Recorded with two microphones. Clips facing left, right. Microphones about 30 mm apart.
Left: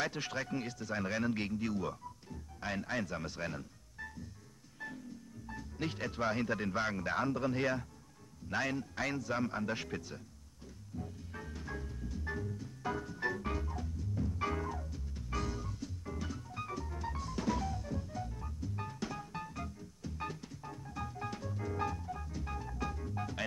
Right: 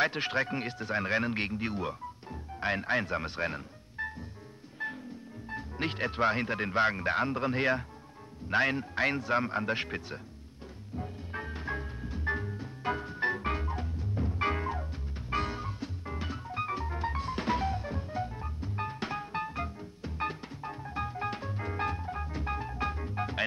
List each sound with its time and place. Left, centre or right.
0.0 s speech: right
4.8 s music: right
5.5 s speech: right
11.0 s music: right